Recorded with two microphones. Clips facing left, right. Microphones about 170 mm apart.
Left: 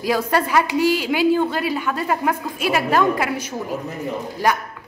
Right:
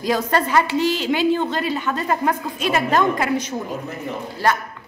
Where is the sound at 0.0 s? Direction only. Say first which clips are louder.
Even; 10° left (ahead or behind).